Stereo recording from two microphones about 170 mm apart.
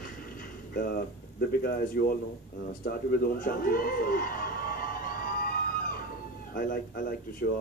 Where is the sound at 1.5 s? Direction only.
60° left (ahead or behind).